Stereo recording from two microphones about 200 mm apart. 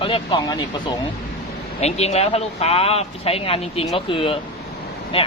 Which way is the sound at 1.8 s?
30° left (ahead or behind).